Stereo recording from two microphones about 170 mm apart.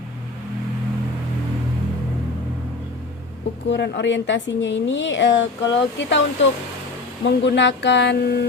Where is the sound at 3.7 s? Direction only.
90° left.